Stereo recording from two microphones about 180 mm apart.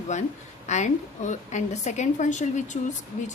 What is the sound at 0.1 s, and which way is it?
A woman's voice, 40° left (ahead or behind).